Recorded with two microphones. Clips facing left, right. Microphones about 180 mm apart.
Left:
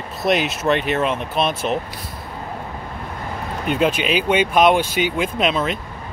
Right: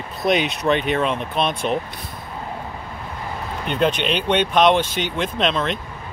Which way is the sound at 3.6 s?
5° left (ahead or behind).